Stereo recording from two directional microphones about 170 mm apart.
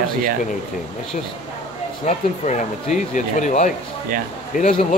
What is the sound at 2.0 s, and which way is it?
Speech, 45° left (ahead or behind).